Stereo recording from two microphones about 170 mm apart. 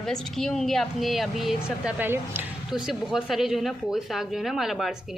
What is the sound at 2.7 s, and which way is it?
A woman's voice, centre (ahead or behind).